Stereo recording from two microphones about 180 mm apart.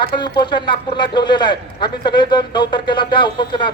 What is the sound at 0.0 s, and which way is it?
A man's voice, 25° left (ahead or behind).